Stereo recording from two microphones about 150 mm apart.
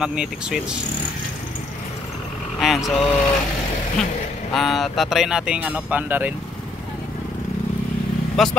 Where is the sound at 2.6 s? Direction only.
5° right (ahead or behind).